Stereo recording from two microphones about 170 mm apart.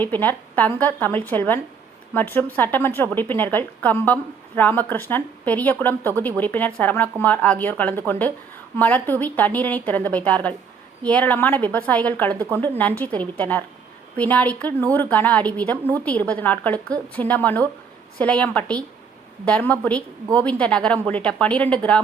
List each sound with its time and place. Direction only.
0.0 s a woman's voice: 10° left (ahead or behind)
15.8 s a woman's voice: 15° right (ahead or behind)
16.0 s a woman's voice: 10° left (ahead or behind)